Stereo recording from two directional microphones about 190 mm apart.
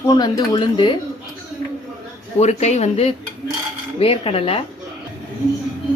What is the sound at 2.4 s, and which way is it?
Speech, 35° left (ahead or behind).